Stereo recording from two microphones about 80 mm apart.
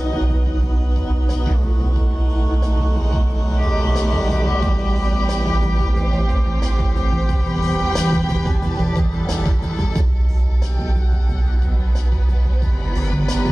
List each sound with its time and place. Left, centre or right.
2.6 s music: centre
12.9 s music: centre